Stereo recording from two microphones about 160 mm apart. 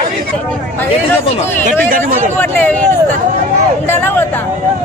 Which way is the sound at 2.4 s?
10° left (ahead or behind).